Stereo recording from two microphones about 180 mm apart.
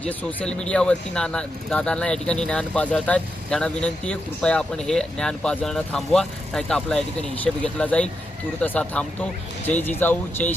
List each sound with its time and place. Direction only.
0.0 s speech: 10° left (ahead or behind)